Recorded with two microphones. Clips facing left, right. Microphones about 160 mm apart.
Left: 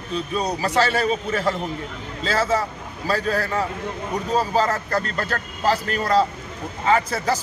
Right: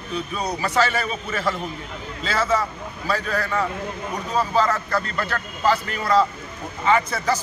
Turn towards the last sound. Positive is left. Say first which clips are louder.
# even
turn(degrees=35)  # may be behind; listen again after turning